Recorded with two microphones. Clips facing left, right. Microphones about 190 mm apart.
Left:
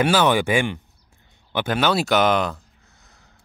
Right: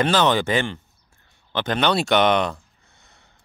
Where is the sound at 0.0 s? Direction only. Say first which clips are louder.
Left 1 dB; 10° left (ahead or behind).